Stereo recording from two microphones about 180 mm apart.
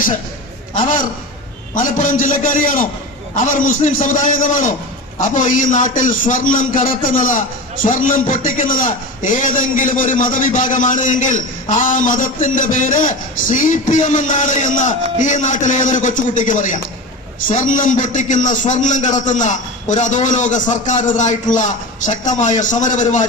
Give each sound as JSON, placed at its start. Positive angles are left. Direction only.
{"t": 0.8, "sound": "a man's voice", "side_deg": 50}